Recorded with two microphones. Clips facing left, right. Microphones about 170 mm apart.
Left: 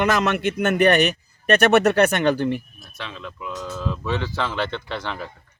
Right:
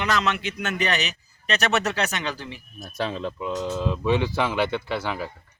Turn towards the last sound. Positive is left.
turn(degrees=-10)  # may be behind; listen again after turning